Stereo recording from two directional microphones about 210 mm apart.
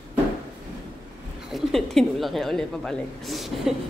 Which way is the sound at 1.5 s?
Centre (ahead or behind).